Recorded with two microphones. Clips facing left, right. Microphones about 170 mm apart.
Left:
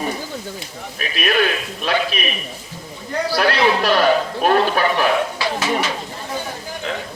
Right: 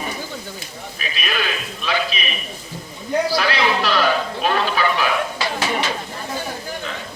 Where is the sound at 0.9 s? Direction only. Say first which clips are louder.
Left 7 dB; 55° left (ahead or behind).